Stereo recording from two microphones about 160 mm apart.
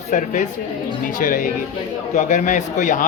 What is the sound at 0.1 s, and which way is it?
Speech, 50° left (ahead or behind).